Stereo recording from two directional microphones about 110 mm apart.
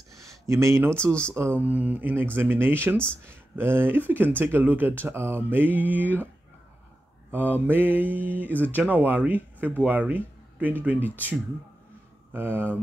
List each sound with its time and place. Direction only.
0.5 s speech: 25° right (ahead or behind)
7.3 s speech: 15° right (ahead or behind)
12.3 s speech: 20° right (ahead or behind)